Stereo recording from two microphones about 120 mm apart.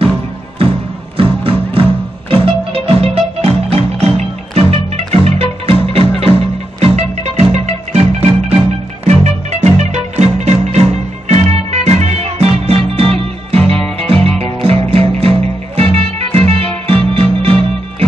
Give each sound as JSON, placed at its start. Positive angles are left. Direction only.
{"t": 1.4, "sound": "music", "side_deg": -50}
{"t": 6.8, "sound": "music", "side_deg": -65}